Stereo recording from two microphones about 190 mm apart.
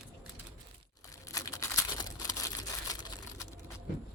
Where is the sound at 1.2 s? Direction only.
20° left (ahead or behind).